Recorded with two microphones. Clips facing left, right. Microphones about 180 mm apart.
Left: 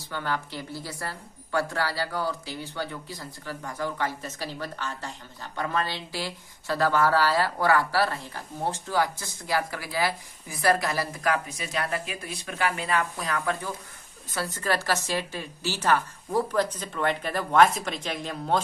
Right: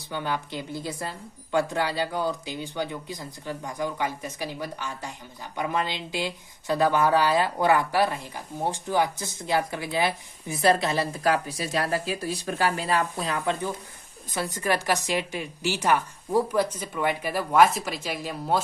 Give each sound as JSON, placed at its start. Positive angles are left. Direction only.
{"t": 0.1, "sound": "speech", "side_deg": -20}
{"t": 13.1, "sound": "speech", "side_deg": -25}